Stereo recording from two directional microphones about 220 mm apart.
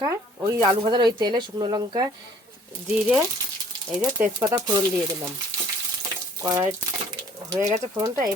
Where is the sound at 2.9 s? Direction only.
5° right (ahead or behind).